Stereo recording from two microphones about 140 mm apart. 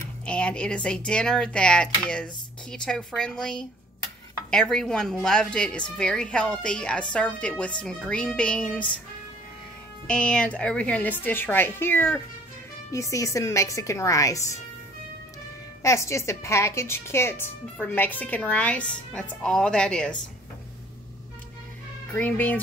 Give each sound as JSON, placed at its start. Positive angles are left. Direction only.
{"t": 0.2, "sound": "a woman's voice", "side_deg": 10}
{"t": 10.0, "sound": "a woman's voice", "side_deg": 5}
{"t": 15.8, "sound": "a woman's voice", "side_deg": 20}
{"t": 22.1, "sound": "a woman's voice", "side_deg": 10}